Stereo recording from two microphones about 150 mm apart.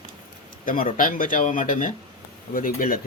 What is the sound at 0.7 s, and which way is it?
Speech, 65° left (ahead or behind).